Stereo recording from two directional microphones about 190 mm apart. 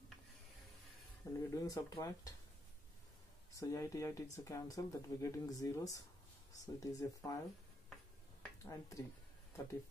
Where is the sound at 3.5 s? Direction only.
15° left (ahead or behind).